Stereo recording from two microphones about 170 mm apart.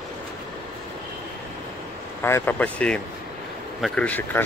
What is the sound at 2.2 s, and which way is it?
Speech, 15° left (ahead or behind).